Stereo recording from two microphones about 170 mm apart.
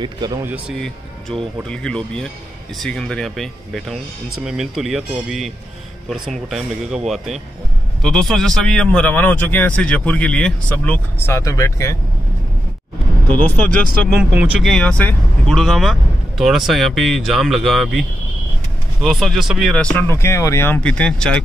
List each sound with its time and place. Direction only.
0.0 s speech: 25° right (ahead or behind)
0.4 s speech: 10° right (ahead or behind)
0.7 s speech: 5° left (ahead or behind)
8.0 s speech: centre (ahead or behind)
13.3 s speech: 10° left (ahead or behind)
14.3 s speech: 5° right (ahead or behind)
14.7 s speech: 5° left (ahead or behind)